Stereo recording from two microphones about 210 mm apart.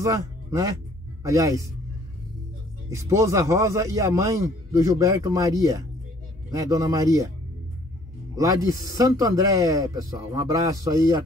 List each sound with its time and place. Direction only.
0.0 s a man's voice: 15° right (ahead or behind)
2.9 s a man's voice: 15° right (ahead or behind)
8.4 s a man's voice: 15° right (ahead or behind)